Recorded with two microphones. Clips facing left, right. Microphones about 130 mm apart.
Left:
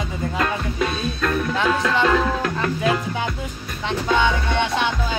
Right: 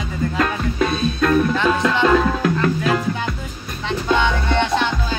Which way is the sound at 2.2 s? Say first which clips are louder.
Right 3 dB; 5° right (ahead or behind).